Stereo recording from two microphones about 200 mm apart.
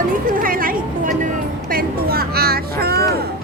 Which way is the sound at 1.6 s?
50° right (ahead or behind).